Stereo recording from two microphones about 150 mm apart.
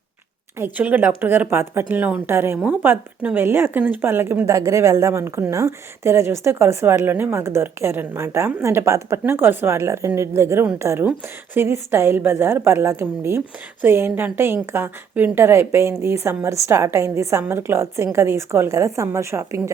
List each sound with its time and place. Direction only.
0.6 s a woman's voice: 10° right (ahead or behind)